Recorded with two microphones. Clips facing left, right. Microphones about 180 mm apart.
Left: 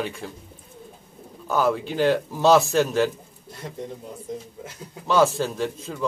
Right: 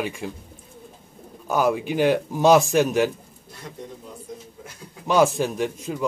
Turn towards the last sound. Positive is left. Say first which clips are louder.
# right 2 dB
turn(degrees=-15)  # may be behind; listen again after turning